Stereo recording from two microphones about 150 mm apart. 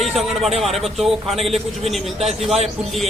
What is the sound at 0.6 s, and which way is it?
A man's voice, centre (ahead or behind).